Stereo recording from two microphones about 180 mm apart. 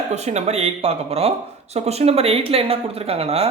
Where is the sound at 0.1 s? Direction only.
40° right (ahead or behind).